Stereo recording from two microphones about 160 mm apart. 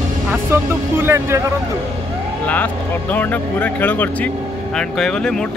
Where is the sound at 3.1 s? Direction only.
10° left (ahead or behind).